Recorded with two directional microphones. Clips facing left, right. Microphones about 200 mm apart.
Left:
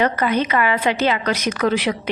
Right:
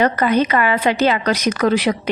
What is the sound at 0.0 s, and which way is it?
A woman's voice, 40° right (ahead or behind).